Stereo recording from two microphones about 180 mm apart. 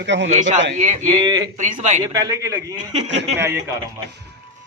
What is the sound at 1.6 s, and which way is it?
Speech, 45° right (ahead or behind).